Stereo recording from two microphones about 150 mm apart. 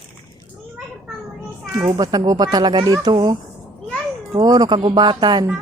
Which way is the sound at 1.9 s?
25° right (ahead or behind).